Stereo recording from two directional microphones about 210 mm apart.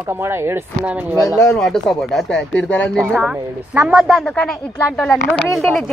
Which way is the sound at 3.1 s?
5° right (ahead or behind).